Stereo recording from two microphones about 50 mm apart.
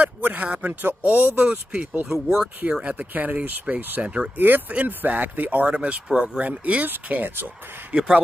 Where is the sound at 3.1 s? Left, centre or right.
Right.